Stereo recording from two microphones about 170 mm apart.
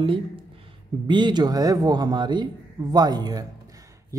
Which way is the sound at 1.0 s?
25° right (ahead or behind).